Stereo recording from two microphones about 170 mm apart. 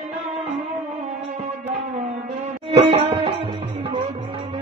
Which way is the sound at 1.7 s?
35° right (ahead or behind).